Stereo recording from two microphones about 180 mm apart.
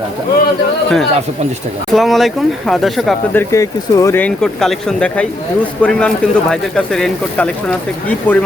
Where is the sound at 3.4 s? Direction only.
20° left (ahead or behind).